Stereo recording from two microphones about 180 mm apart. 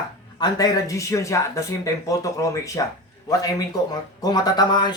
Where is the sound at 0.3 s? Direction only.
20° left (ahead or behind).